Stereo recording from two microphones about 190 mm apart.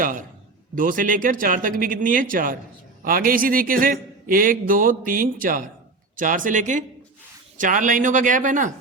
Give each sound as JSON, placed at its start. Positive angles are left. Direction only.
{"t": 0.0, "sound": "a man's voice", "side_deg": -45}